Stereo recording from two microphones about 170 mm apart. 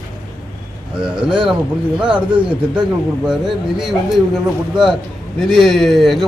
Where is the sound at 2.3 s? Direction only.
30° right (ahead or behind).